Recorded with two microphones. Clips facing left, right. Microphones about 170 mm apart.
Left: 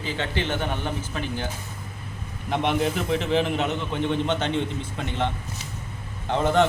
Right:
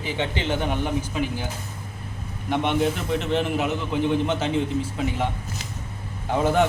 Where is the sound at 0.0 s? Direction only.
15° right (ahead or behind).